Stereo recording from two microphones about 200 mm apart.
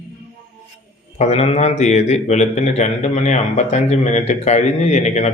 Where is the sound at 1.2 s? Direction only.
35° left (ahead or behind).